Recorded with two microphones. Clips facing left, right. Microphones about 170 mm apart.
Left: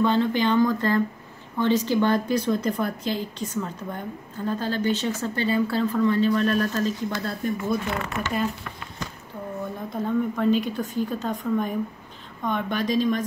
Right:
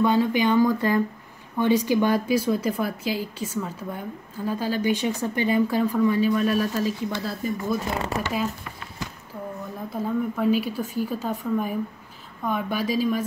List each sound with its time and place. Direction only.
0.0 s speech: 10° right (ahead or behind)
7.8 s speech: 35° right (ahead or behind)
9.8 s speech: 5° right (ahead or behind)